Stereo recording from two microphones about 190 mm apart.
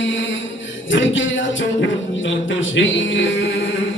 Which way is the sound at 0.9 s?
80° left.